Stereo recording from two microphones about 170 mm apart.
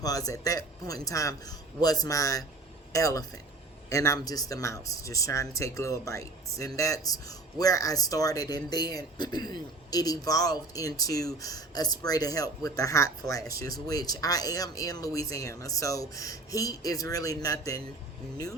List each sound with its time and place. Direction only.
0.0 s speech: 20° left (ahead or behind)